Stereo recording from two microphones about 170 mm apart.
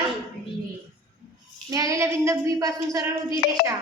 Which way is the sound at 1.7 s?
20° right (ahead or behind).